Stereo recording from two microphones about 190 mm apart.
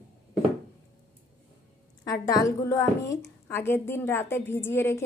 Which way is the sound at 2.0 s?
15° left (ahead or behind).